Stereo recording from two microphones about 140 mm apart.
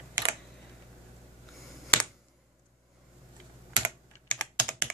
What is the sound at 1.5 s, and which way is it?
Finger snapping, 5° left (ahead or behind).